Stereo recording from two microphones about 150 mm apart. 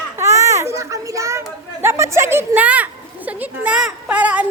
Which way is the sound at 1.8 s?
20° right (ahead or behind).